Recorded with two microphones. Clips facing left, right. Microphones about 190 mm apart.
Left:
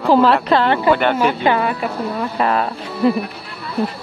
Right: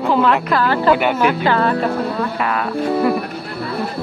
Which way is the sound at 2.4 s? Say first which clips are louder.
Left 3 dB; 30° left (ahead or behind).